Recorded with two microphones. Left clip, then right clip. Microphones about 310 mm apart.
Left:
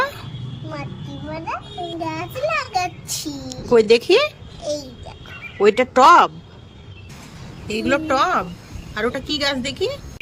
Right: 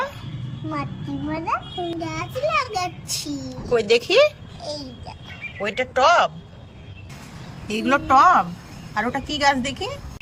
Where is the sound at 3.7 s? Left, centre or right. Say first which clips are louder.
Left 5 dB; centre.